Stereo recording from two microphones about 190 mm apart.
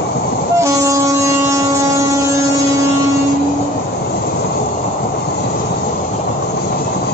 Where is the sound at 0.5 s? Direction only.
15° right (ahead or behind).